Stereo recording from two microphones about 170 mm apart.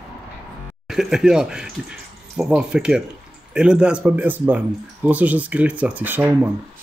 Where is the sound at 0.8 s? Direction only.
Centre (ahead or behind).